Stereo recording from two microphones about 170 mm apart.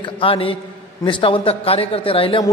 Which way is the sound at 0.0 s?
30° left (ahead or behind).